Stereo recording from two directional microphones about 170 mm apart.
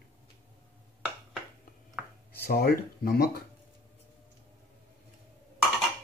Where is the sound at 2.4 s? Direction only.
60° left (ahead or behind).